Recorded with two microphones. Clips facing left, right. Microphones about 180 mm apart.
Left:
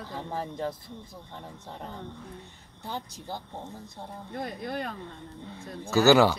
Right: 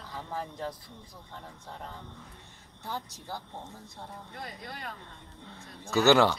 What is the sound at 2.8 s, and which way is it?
Speech, 20° left (ahead or behind).